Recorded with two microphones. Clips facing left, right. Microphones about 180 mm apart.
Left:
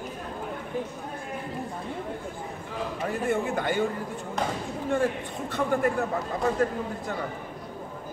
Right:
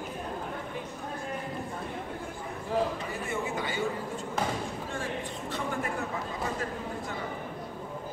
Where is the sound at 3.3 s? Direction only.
55° left (ahead or behind).